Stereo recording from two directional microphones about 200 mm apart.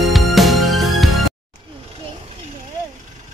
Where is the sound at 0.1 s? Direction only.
Centre (ahead or behind).